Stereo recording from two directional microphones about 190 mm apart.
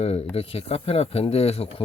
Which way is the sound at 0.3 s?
30° left (ahead or behind).